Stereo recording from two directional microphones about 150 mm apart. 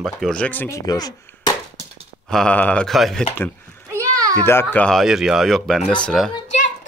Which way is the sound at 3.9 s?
25° right (ahead or behind).